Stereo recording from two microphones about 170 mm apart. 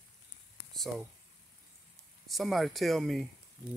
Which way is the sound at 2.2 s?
Centre (ahead or behind).